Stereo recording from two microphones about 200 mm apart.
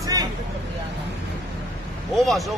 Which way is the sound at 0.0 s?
20° right (ahead or behind).